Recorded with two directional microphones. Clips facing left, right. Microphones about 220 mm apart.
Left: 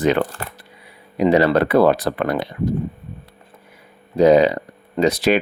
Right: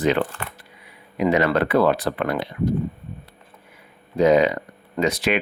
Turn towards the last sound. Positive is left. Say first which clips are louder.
# left 5 dB
turn(degrees=35)  # may be behind; listen again after turning